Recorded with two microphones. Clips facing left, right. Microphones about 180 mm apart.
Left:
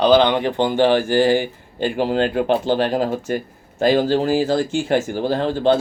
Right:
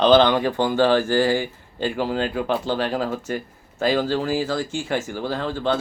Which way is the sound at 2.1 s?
65° left (ahead or behind).